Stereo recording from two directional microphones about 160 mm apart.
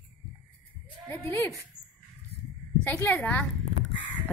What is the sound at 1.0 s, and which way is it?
Speech, 15° left (ahead or behind).